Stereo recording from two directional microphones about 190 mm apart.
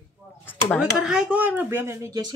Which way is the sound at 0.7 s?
5° right (ahead or behind).